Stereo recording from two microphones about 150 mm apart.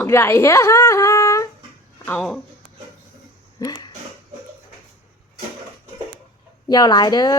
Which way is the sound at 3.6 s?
30° left (ahead or behind).